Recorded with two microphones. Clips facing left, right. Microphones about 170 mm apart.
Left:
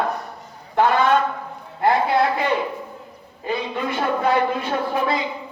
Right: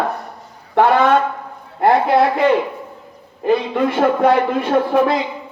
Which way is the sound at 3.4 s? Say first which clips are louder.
Right 9 dB; 55° right (ahead or behind).